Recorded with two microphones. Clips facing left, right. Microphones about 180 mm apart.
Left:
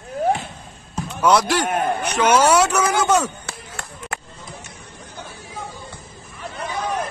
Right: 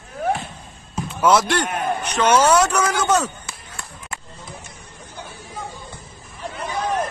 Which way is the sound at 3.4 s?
65° left (ahead or behind).